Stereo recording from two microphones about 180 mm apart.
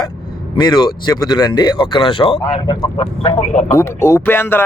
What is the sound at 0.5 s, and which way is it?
Speech, 25° left (ahead or behind).